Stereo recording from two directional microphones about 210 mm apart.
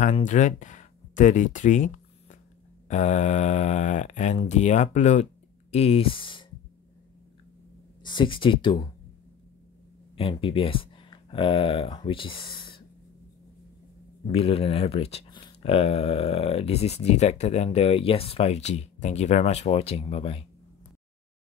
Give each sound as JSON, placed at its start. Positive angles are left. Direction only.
{"t": 0.0, "sound": "speech", "side_deg": 35}
{"t": 2.9, "sound": "speech", "side_deg": 35}
{"t": 8.0, "sound": "speech", "side_deg": 20}
{"t": 10.1, "sound": "speech", "side_deg": 25}
{"t": 14.2, "sound": "speech", "side_deg": 25}